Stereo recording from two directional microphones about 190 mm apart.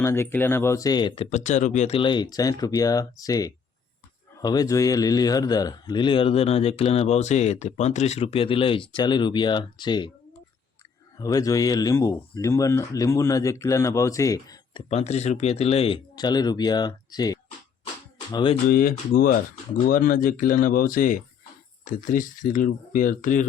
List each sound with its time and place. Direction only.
0.0 s speech: 10° left (ahead or behind)
11.2 s speech: 20° left (ahead or behind)
18.7 s speech: 50° left (ahead or behind)